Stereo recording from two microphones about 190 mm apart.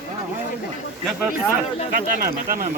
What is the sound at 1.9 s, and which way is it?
Speech, 50° right (ahead or behind).